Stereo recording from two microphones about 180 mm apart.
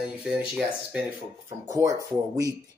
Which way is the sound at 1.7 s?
20° right (ahead or behind).